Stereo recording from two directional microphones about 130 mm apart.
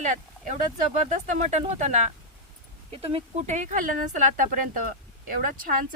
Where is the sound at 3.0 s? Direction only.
55° right (ahead or behind); by 4.2 s 85° right.